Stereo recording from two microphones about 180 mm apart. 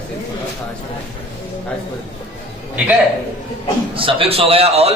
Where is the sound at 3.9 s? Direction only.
30° right (ahead or behind).